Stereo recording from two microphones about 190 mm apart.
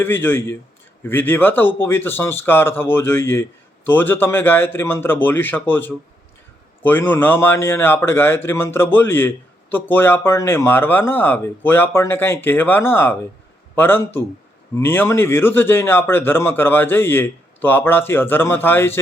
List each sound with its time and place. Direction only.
0.0 s a man's voice: 10° left (ahead or behind)